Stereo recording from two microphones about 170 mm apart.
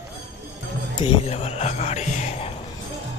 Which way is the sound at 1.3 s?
40° left (ahead or behind).